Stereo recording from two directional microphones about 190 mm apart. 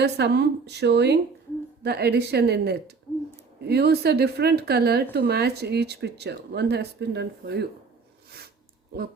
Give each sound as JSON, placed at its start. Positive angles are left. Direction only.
{"t": 0.0, "sound": "speech", "side_deg": -60}